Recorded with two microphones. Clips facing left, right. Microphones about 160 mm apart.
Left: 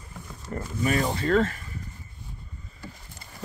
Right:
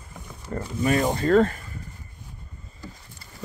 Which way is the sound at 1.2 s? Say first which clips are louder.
Right 4 dB; 40° right (ahead or behind).